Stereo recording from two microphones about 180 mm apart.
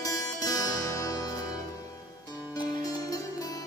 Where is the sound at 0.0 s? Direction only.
20° left (ahead or behind).